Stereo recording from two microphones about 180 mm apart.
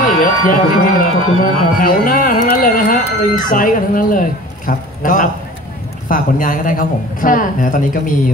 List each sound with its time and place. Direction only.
0.0 s speech: 50° left (ahead or behind)